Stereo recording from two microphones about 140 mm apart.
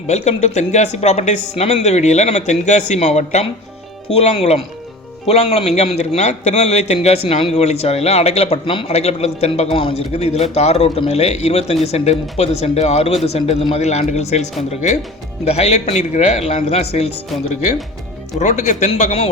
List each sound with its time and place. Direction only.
0.1 s a man's voice: 55° left (ahead or behind)
15.4 s a man's voice: 45° left (ahead or behind)
18.3 s speech: 60° left (ahead or behind)